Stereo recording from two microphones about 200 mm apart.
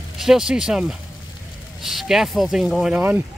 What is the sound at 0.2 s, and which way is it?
Speech, centre (ahead or behind).